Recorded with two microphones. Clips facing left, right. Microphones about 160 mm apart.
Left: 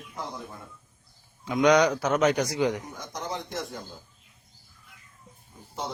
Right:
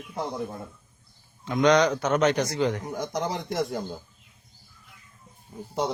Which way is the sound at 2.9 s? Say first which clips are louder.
Right 6 dB; 70° right (ahead or behind).